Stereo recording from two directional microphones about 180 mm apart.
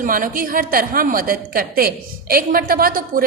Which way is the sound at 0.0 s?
50° right (ahead or behind).